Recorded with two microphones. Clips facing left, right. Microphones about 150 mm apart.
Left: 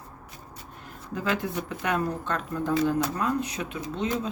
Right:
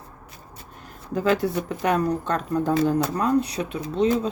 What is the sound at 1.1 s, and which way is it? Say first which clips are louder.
A woman's voice: right 7 dB; 35° right (ahead or behind).